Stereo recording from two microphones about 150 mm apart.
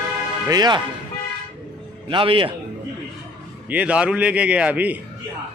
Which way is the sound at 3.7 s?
10° right (ahead or behind).